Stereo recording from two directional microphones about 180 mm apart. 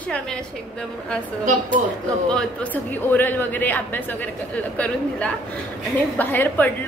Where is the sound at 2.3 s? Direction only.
5° left (ahead or behind).